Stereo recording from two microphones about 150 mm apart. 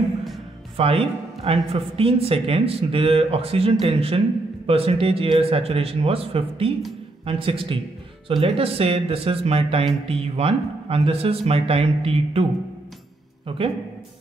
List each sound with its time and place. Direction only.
0.7 s speech: 40° right (ahead or behind)